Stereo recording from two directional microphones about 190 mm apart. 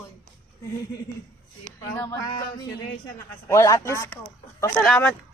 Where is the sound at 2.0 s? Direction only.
20° left (ahead or behind).